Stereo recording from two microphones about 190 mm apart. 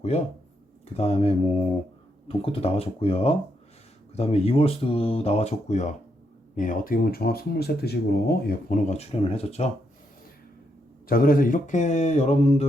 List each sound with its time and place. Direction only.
0.1 s speech: 35° left (ahead or behind); by 8.8 s 55° left (ahead or behind)
8.9 s speech: 35° left (ahead or behind)
11.1 s speech: 50° left (ahead or behind)